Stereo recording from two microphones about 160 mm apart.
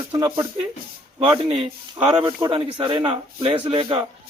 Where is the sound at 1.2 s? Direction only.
35° right (ahead or behind).